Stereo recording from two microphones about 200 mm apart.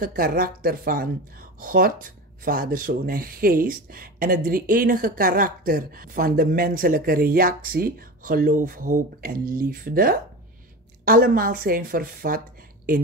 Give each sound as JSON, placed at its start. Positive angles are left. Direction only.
{"t": 0.0, "sound": "speech", "side_deg": -50}